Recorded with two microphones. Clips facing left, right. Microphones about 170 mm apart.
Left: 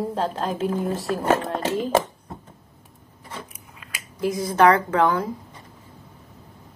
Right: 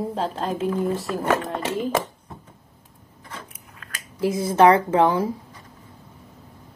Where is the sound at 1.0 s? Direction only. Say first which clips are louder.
Left 1 dB; 35° left (ahead or behind).